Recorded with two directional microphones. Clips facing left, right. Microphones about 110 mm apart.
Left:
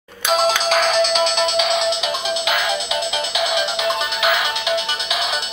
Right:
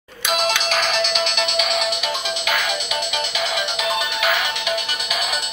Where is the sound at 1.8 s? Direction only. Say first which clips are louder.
Left 3 dB; 20° left (ahead or behind).